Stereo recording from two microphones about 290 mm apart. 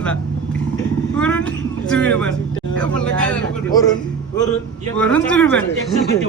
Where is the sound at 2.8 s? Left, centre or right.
Centre.